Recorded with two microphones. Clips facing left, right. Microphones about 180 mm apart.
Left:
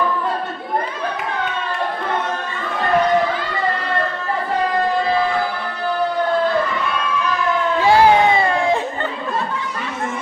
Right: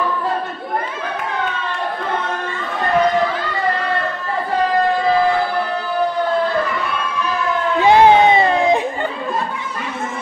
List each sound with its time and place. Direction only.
7.8 s crowd: 20° right (ahead or behind)